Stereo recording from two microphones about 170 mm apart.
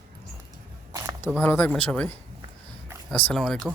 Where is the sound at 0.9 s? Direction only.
20° right (ahead or behind).